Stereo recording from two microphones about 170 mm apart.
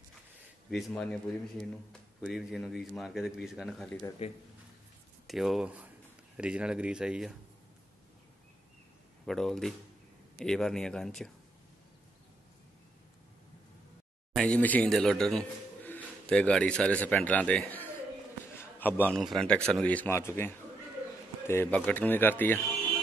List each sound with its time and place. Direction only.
0.7 s speech: centre (ahead or behind)
4.2 s speech: 35° left (ahead or behind)
5.2 s speech: centre (ahead or behind)
9.2 s speech: centre (ahead or behind)
14.3 s a man's voice: 5° left (ahead or behind)
18.6 s a sound: 10° left (ahead or behind)
19.2 s speech: 5° left (ahead or behind)